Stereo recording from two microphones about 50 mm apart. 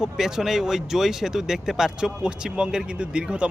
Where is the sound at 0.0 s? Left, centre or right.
Centre.